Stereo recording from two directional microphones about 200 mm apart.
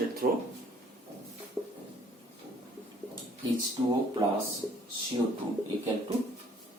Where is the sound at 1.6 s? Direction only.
Centre (ahead or behind).